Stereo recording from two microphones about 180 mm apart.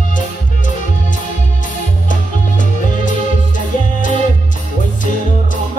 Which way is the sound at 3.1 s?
45° left (ahead or behind).